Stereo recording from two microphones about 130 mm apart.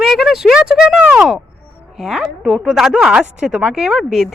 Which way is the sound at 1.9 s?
5° right (ahead or behind).